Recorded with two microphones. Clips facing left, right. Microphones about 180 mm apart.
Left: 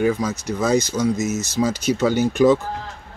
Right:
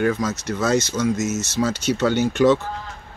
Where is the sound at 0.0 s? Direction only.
10° left (ahead or behind).